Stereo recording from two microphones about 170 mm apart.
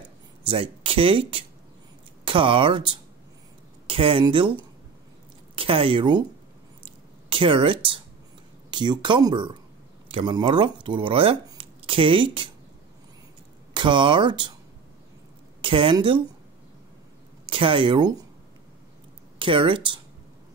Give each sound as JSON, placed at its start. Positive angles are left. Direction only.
{"t": 0.4, "sound": "speech", "side_deg": -30}
{"t": 5.6, "sound": "speech", "side_deg": -30}
{"t": 6.8, "sound": "squish", "side_deg": -30}
{"t": 8.6, "sound": "speech", "side_deg": -25}
{"t": 13.7, "sound": "speech", "side_deg": -30}
{"t": 15.6, "sound": "a woman's voice", "side_deg": -30}
{"t": 17.5, "sound": "speech", "side_deg": -30}
{"t": 19.3, "sound": "speech", "side_deg": -30}